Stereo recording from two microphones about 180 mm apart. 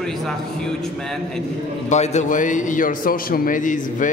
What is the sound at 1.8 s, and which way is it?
A man's voice, 40° left (ahead or behind).